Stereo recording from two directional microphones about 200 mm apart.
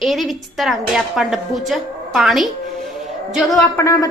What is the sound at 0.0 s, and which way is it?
A woman's voice, centre (ahead or behind).